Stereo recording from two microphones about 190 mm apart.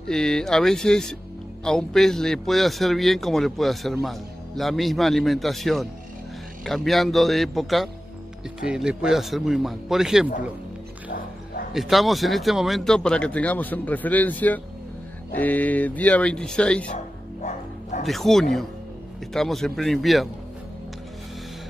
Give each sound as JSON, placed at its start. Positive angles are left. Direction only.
{"t": 0.1, "sound": "speech", "side_deg": 5}
{"t": 11.7, "sound": "speech", "side_deg": 0}
{"t": 16.9, "sound": "music", "side_deg": 40}
{"t": 18.0, "sound": "speech", "side_deg": 0}